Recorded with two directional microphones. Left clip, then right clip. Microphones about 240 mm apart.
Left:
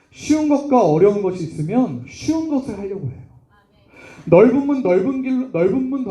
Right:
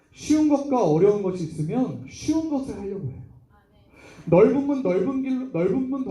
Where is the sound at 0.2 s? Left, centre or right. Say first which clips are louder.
Left 3 dB; left.